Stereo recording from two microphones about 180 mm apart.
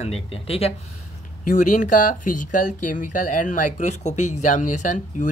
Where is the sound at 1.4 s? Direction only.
45° left (ahead or behind).